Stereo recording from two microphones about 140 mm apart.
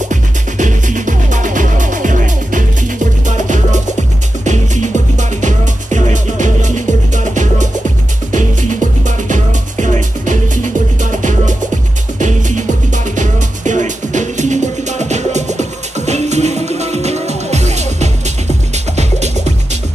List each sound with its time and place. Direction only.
0.1 s music: 65° right (ahead or behind)